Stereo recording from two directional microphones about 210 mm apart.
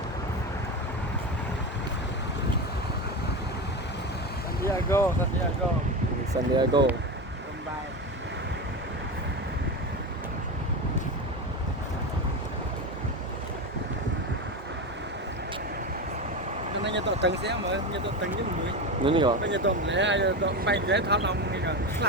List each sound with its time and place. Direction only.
4.6 s a sound: 10° left (ahead or behind)
6.3 s speech: 20° right (ahead or behind)
16.8 s speech: 55° right (ahead or behind)
19.0 s speech: 25° right (ahead or behind)
19.4 s speech: 55° right (ahead or behind)